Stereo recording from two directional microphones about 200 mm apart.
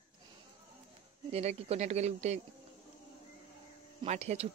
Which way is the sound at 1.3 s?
30° right (ahead or behind).